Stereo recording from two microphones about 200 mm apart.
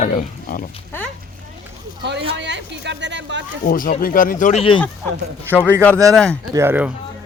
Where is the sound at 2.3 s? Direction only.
60° right (ahead or behind).